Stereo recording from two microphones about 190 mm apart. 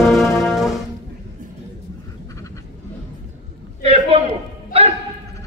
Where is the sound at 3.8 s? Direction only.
30° right (ahead or behind).